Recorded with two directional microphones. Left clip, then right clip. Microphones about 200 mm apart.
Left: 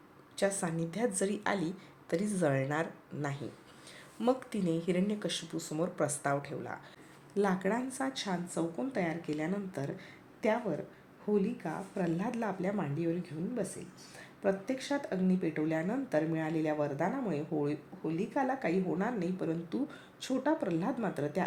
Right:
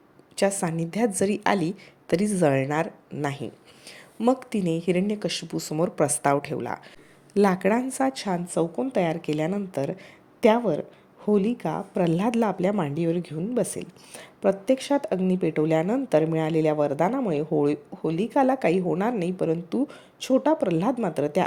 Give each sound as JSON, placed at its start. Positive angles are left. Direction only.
{"t": 0.3, "sound": "speech", "side_deg": -35}